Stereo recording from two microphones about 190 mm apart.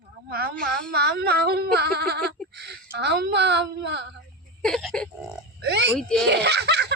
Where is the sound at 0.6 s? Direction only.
60° right (ahead or behind).